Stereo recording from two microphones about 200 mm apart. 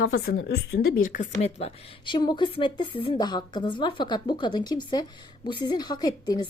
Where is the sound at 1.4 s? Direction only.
30° left (ahead or behind).